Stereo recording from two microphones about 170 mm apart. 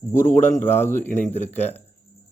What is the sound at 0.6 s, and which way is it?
Speech, 15° left (ahead or behind).